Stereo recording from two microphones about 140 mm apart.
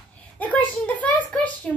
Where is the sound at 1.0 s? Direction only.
10° left (ahead or behind).